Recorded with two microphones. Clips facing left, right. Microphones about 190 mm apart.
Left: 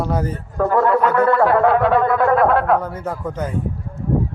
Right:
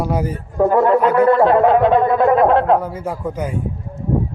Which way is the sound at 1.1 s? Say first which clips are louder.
Right 3 dB; 10° right (ahead or behind).